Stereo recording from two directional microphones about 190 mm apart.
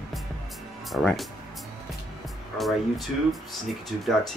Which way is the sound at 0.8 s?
Centre (ahead or behind).